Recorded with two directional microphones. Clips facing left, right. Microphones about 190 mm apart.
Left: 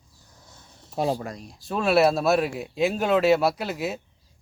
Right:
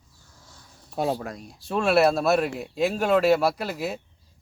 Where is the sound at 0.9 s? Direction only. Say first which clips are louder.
Left 1 dB; centre (ahead or behind).